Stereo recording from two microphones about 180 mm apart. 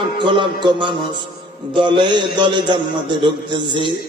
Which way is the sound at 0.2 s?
25° right (ahead or behind).